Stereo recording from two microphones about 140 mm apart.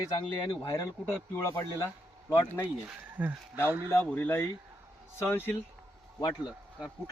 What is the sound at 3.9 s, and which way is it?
Speech, 15° left (ahead or behind).